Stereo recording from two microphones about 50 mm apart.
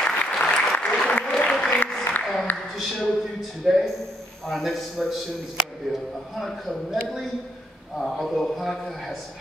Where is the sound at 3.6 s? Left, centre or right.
Centre.